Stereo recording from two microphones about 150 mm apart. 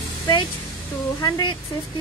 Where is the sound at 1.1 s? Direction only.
25° left (ahead or behind).